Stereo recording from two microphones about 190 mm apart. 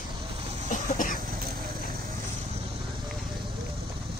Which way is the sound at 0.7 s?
45° left (ahead or behind).